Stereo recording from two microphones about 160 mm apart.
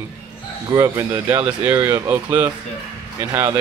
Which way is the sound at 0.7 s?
20° right (ahead or behind).